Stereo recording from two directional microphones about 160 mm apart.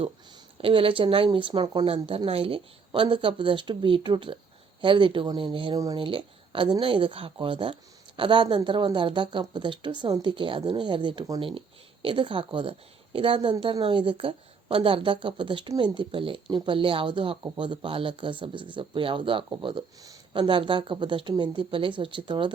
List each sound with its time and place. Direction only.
0.6 s a woman's voice: 35° right (ahead or behind)